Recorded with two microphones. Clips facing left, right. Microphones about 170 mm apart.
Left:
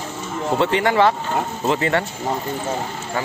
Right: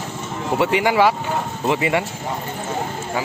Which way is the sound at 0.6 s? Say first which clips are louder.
Right 1 dB; 10° right (ahead or behind).